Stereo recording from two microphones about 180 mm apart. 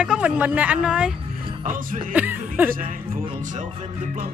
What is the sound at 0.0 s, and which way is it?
Speech, 5° right (ahead or behind).